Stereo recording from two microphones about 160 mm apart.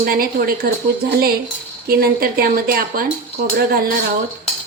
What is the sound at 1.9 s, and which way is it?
Speech, 70° right (ahead or behind).